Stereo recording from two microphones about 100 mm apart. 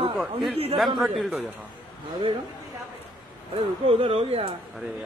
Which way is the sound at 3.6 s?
70° right (ahead or behind).